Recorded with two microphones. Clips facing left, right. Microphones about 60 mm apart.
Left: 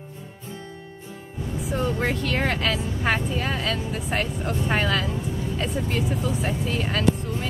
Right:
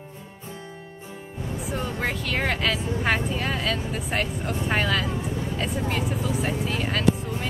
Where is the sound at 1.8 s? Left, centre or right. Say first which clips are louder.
Left 5 dB; centre.